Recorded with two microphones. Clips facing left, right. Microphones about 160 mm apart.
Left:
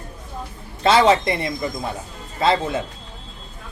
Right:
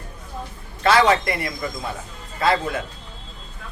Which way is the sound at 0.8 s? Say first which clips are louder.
Left 2 dB; 25° left (ahead or behind).